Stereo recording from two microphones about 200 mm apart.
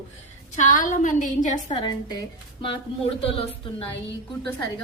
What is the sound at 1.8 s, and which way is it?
A woman's voice, 20° left (ahead or behind).